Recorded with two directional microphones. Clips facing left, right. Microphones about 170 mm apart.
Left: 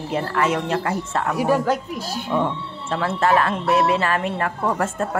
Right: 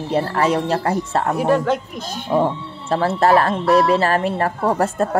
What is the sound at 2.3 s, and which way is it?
Speech, 35° right (ahead or behind).